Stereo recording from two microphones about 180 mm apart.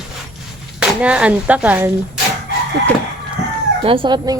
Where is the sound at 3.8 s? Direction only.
30° right (ahead or behind).